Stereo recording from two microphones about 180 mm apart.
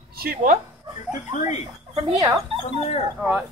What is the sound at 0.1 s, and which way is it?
Speech, 55° right (ahead or behind).